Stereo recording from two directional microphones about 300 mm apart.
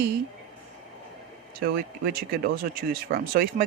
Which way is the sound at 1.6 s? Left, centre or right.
Right.